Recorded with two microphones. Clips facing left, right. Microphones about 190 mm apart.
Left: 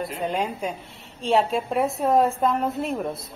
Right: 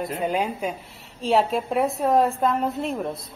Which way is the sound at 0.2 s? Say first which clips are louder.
Right 1 dB; 5° right (ahead or behind).